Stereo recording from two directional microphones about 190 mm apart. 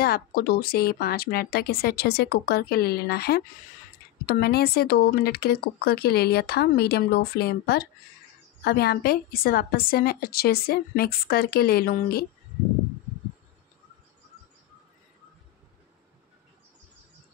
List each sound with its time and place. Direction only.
0.0 s a woman's voice: 55° left (ahead or behind)